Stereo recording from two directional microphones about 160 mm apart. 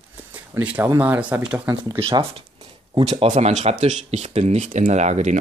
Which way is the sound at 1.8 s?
30° right (ahead or behind).